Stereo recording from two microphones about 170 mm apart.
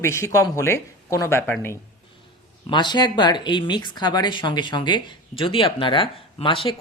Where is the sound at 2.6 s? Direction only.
25° left (ahead or behind).